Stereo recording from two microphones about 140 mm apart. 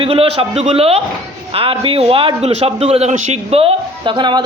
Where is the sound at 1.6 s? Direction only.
40° right (ahead or behind).